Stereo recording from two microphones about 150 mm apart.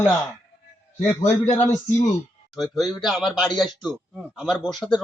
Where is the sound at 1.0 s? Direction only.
15° left (ahead or behind).